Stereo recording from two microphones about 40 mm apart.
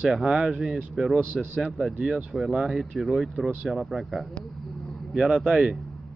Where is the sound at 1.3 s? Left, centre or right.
Left.